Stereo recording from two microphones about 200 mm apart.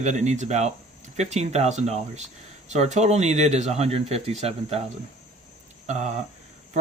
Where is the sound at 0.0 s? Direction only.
35° right (ahead or behind).